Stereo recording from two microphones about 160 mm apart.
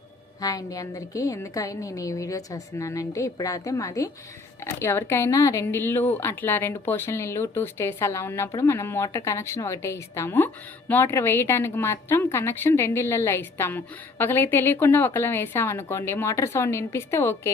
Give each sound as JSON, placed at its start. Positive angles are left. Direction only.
{"t": 0.4, "sound": "a woman's voice", "side_deg": 20}